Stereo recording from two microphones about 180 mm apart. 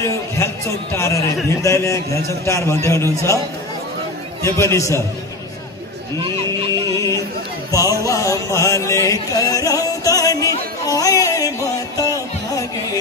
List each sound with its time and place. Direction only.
0.9 s a man's voice: 15° left (ahead or behind)
4.4 s a man's voice: 15° left (ahead or behind)
6.7 s music: 20° left (ahead or behind)